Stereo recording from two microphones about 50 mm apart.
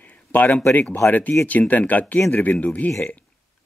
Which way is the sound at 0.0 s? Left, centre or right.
Left.